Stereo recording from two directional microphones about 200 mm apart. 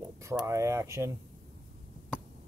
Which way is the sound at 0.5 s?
15° right (ahead or behind).